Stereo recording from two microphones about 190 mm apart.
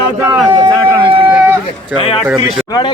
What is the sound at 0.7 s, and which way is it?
Speech, 15° right (ahead or behind).